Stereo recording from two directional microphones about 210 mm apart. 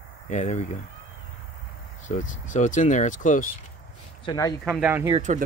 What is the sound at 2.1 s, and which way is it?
Speech, 35° left (ahead or behind).